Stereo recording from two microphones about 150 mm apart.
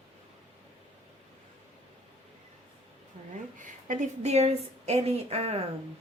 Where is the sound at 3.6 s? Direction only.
55° right (ahead or behind).